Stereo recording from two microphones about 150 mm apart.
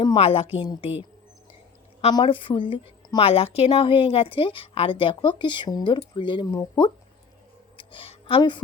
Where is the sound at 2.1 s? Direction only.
35° left (ahead or behind).